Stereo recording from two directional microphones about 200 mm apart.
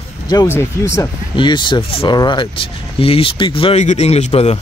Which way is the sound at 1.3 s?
25° left (ahead or behind).